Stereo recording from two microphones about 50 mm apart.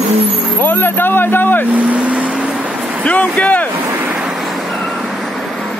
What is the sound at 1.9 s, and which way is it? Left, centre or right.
Vehicle, right.